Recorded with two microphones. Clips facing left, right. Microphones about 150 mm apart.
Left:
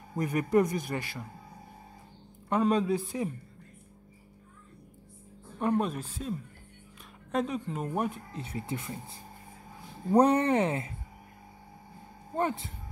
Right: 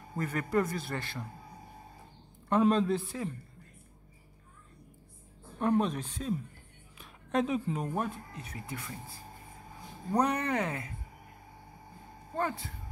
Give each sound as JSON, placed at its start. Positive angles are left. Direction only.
{"t": 0.1, "sound": "a man's voice", "side_deg": 15}
{"t": 2.5, "sound": "a man's voice", "side_deg": 5}
{"t": 5.6, "sound": "a man's voice", "side_deg": 5}
{"t": 7.0, "sound": "a sound", "side_deg": 0}
{"t": 7.9, "sound": "a man's voice", "side_deg": 15}
{"t": 8.3, "sound": "speech", "side_deg": 25}
{"t": 12.4, "sound": "speech", "side_deg": 20}